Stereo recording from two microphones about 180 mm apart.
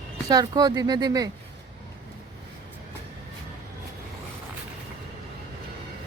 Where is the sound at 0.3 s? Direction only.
20° right (ahead or behind).